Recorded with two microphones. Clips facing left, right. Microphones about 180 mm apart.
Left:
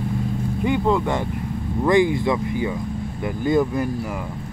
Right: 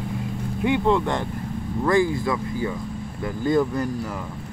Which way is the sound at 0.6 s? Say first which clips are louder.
Even; 5° left (ahead or behind).